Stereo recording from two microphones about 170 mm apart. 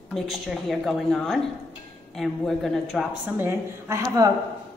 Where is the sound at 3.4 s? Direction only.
15° right (ahead or behind).